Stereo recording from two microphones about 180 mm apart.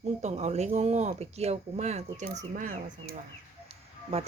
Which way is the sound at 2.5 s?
50° right (ahead or behind).